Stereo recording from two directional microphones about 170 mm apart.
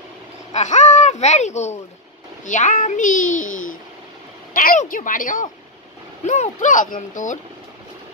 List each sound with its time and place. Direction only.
0.5 s speech: 45° left (ahead or behind)